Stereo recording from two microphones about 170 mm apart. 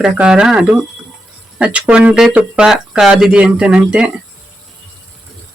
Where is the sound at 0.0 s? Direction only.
5° right (ahead or behind).